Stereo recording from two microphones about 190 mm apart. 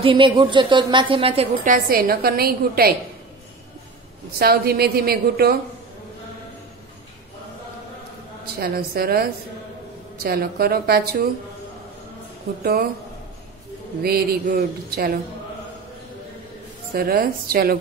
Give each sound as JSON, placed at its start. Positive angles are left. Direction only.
{"t": 0.0, "sound": "a woman's voice", "side_deg": -25}
{"t": 1.7, "sound": "a woman's voice", "side_deg": -50}
{"t": 4.4, "sound": "a woman's voice", "side_deg": -55}
{"t": 8.5, "sound": "a woman's voice", "side_deg": -55}
{"t": 14.0, "sound": "a woman's voice", "side_deg": -55}
{"t": 16.9, "sound": "a woman's voice", "side_deg": -50}